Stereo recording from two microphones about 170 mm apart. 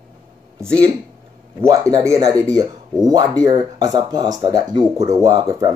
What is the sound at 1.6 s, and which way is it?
Speech, 20° right (ahead or behind).